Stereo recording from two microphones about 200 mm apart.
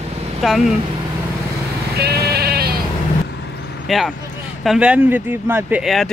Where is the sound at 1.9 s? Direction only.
50° right (ahead or behind).